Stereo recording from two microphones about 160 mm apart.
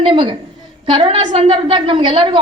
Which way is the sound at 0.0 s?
30° right (ahead or behind).